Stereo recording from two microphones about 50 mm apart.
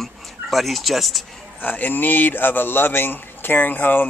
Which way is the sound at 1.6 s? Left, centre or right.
Left.